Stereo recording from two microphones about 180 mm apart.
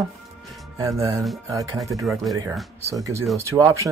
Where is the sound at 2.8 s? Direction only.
15° right (ahead or behind).